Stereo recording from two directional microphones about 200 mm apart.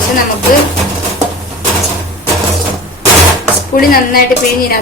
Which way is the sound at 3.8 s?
45° left (ahead or behind).